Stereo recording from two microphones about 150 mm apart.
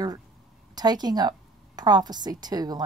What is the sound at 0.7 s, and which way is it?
A woman's voice, 25° right (ahead or behind).